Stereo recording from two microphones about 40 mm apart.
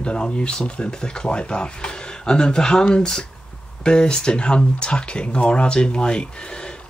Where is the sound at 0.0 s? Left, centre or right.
Left.